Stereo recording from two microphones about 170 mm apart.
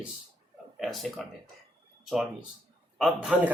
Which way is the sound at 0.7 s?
Centre (ahead or behind).